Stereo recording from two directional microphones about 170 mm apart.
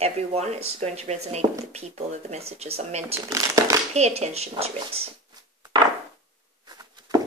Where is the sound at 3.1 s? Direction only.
20° right (ahead or behind).